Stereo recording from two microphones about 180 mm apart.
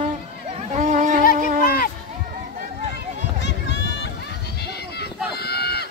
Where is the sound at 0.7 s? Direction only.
45° right (ahead or behind).